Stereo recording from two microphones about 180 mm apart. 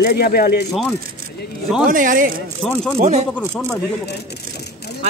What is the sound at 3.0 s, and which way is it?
Speech, 40° right (ahead or behind).